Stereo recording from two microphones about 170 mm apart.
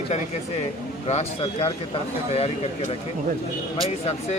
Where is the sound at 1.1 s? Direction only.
35° left (ahead or behind).